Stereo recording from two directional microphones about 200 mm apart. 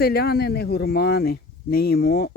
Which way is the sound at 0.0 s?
50° left (ahead or behind).